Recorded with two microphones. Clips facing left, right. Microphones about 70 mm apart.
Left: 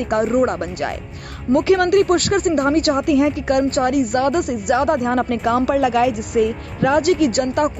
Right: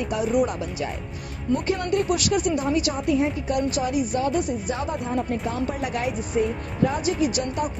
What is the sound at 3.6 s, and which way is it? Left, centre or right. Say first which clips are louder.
Speech: left 7 dB; left.